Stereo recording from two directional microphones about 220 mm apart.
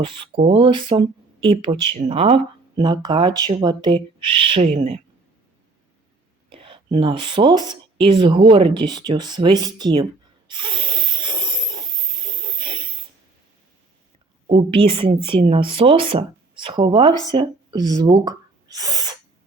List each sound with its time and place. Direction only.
0.0 s speech: 20° right (ahead or behind)
6.5 s speech: 25° right (ahead or behind)
10.5 s a sound: 20° right (ahead or behind)
14.5 s speech: 25° right (ahead or behind)